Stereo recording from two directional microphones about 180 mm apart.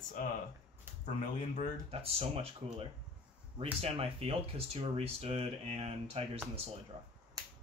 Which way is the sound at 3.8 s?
30° right (ahead or behind).